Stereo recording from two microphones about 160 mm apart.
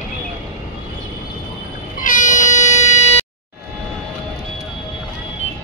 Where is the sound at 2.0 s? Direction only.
50° left (ahead or behind).